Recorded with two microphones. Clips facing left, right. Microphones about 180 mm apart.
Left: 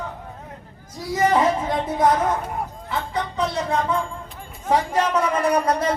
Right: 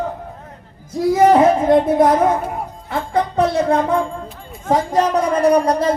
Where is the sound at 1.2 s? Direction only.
55° right (ahead or behind).